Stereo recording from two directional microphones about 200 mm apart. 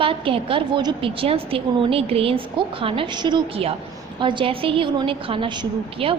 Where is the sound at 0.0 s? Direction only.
25° right (ahead or behind).